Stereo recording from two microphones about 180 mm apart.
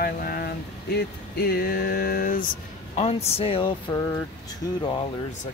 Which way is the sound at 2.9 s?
35° left (ahead or behind).